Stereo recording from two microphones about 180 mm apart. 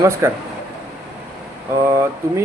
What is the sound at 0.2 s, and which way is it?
Speech, 15° right (ahead or behind).